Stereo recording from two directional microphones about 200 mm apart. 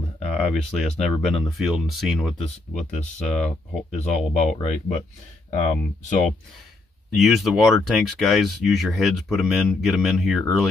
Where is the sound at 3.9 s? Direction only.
35° left (ahead or behind).